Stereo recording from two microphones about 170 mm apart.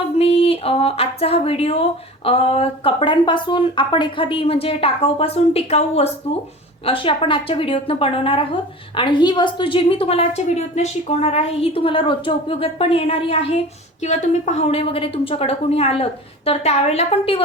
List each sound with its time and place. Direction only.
0.2 s speech: 35° left (ahead or behind)